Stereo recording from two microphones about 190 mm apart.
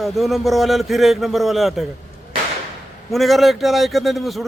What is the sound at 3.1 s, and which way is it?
A man's voice, centre (ahead or behind).